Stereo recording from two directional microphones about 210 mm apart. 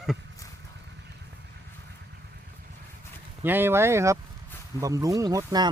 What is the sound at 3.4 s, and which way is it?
Speech, 10° right (ahead or behind).